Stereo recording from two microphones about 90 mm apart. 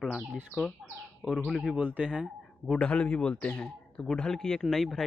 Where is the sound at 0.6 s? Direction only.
5° left (ahead or behind).